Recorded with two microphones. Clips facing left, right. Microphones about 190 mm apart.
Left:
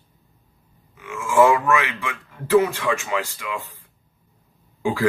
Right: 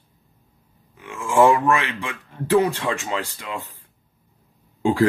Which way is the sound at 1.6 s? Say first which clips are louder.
Even; 30° right (ahead or behind).